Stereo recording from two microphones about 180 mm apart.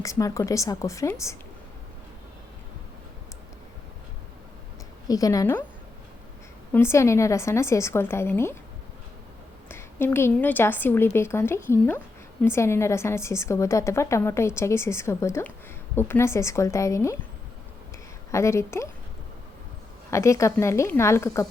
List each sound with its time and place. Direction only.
0.0 s a woman's voice: 20° left (ahead or behind)
5.0 s a woman's voice: 20° left (ahead or behind)
6.7 s a woman's voice: 15° left (ahead or behind)
9.6 s a woman's voice: 15° left (ahead or behind)
18.3 s a woman's voice: 15° left (ahead or behind)
20.1 s a woman's voice: 15° left (ahead or behind)